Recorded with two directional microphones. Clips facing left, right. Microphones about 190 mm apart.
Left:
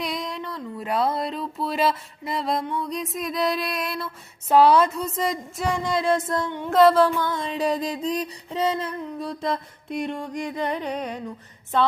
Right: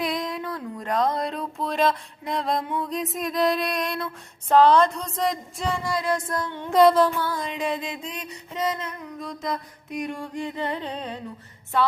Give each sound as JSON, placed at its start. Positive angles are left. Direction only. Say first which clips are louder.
{"t": 0.0, "sound": "a sound", "louder": "right 2 dB", "side_deg": 0}
{"t": 5.6, "sound": "music", "louder": "left 3 dB", "side_deg": 20}
{"t": 6.6, "sound": "music", "louder": "even", "side_deg": 0}
{"t": 7.3, "sound": "music", "louder": "left 3 dB", "side_deg": 25}
{"t": 10.2, "sound": "music", "louder": "left 2 dB", "side_deg": 15}